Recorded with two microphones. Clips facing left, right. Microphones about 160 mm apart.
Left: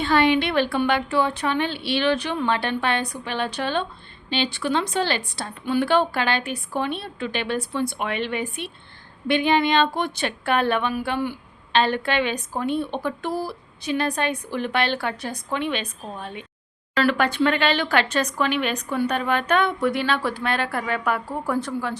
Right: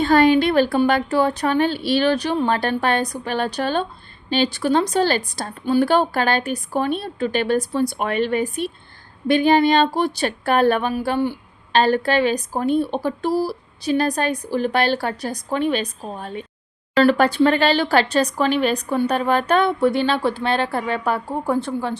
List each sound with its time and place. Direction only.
0.0 s speech: 40° right (ahead or behind)